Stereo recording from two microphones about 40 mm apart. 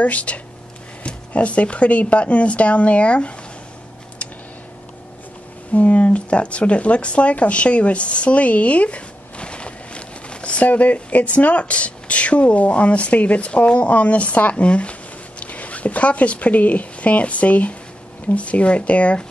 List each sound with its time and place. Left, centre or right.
0.0 s speech: left
5.7 s speech: left